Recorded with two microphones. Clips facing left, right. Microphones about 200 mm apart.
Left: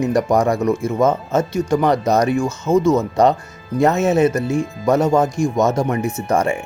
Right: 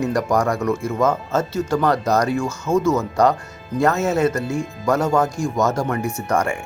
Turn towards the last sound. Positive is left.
turn(degrees=20)  # may be behind; listen again after turning